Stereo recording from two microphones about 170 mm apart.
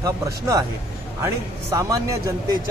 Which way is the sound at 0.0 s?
20° right (ahead or behind).